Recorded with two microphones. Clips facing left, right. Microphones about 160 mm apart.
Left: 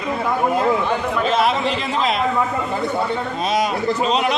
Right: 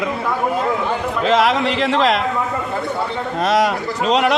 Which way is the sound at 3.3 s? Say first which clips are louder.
Right 5 dB; 75° right (ahead or behind).